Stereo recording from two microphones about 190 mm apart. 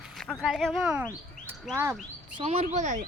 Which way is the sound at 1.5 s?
10° right (ahead or behind).